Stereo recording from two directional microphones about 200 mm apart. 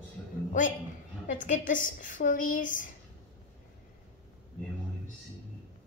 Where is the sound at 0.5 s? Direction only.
40° left (ahead or behind).